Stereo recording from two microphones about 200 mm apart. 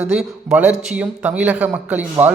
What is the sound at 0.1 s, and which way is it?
A man's voice, 5° right (ahead or behind).